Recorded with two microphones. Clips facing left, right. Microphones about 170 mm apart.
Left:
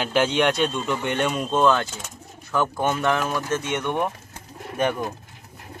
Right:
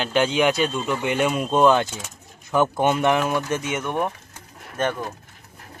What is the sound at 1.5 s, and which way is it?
Speech, 15° right (ahead or behind).